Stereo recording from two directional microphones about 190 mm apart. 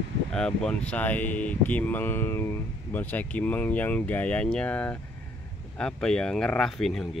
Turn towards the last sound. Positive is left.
turn(degrees=0)  # may be behind; listen again after turning